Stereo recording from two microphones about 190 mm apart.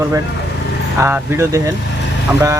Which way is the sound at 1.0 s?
15° right (ahead or behind).